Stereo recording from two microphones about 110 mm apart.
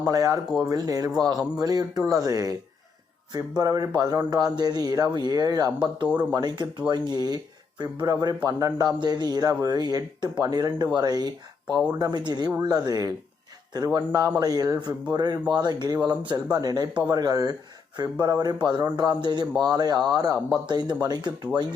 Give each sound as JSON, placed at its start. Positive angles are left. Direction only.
{"t": 0.1, "sound": "speech", "side_deg": -30}